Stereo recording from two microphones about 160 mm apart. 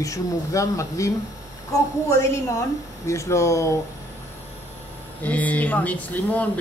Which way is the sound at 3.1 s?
20° left (ahead or behind).